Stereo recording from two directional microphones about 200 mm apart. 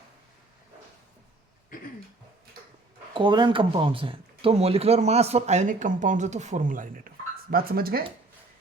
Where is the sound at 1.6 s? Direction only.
45° left (ahead or behind).